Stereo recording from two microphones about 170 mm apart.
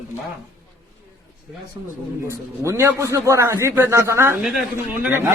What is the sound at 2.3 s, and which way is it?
Speech, 15° right (ahead or behind).